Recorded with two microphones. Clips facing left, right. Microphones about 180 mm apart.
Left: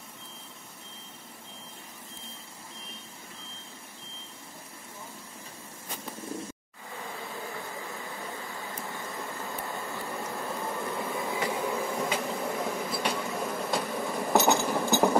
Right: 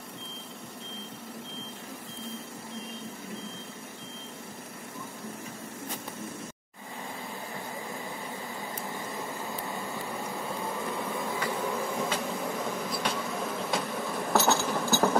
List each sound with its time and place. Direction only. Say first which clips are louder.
10.2 s a sound: left 1 dB; centre (ahead or behind)
11.6 s vehicle: left 1 dB; 5° left (ahead or behind)
14.3 s engine: left 2 dB; 15° left (ahead or behind)